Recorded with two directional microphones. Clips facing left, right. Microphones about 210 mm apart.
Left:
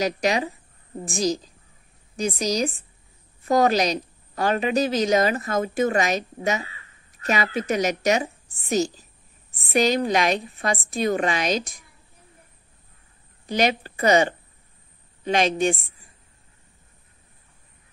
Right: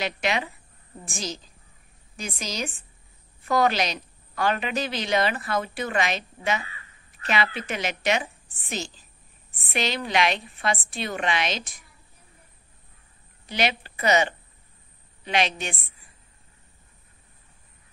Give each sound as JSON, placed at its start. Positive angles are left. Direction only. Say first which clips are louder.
{"t": 0.0, "sound": "a woman's voice", "louder": "left 5 dB", "side_deg": 40}
{"t": 13.5, "sound": "a woman's voice", "louder": "left 5 dB", "side_deg": 45}